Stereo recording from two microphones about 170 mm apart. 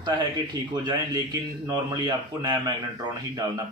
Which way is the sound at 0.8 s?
25° right (ahead or behind).